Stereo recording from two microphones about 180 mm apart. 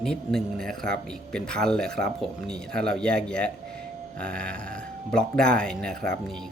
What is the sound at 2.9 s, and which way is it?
Speech, 5° left (ahead or behind).